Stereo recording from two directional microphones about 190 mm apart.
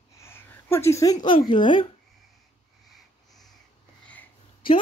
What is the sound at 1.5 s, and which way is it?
Speech, 25° left (ahead or behind).